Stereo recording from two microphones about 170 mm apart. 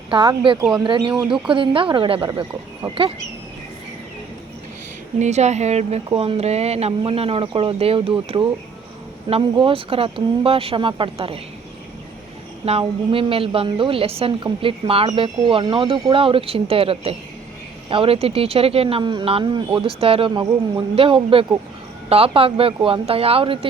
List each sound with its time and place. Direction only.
0.1 s speech: 25° right (ahead or behind)
5.2 s a woman's voice: 40° right (ahead or behind)
12.6 s a woman's voice: 35° right (ahead or behind)